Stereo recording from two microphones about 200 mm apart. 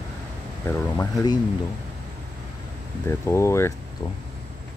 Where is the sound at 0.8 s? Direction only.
15° left (ahead or behind).